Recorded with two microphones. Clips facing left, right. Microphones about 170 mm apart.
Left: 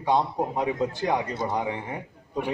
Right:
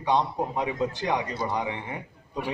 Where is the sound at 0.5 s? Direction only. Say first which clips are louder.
Left 1 dB; 50° left (ahead or behind).